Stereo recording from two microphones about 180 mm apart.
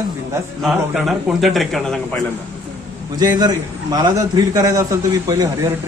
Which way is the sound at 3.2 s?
20° right (ahead or behind).